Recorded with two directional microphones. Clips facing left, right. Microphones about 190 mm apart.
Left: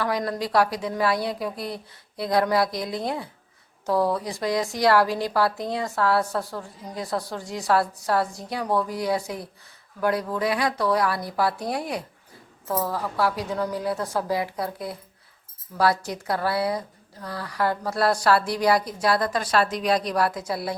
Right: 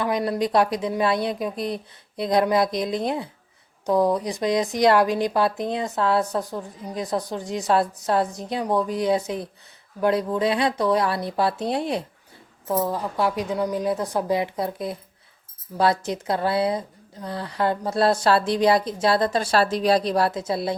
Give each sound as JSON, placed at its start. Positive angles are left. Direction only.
{"t": 0.0, "sound": "a woman's voice", "side_deg": -15}